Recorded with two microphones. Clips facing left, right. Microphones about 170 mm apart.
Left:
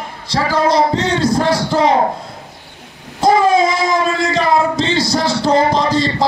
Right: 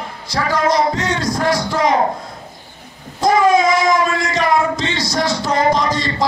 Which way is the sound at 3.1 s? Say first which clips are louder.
Left 1 dB; 30° left (ahead or behind).